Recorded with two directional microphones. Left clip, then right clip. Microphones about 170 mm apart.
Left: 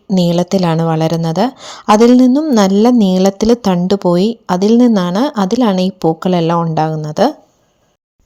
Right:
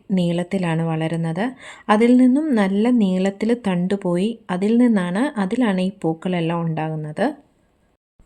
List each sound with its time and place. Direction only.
0.1 s a woman's voice: 35° left (ahead or behind)